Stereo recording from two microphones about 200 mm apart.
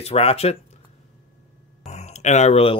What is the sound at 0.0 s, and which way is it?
Speech, 30° left (ahead or behind).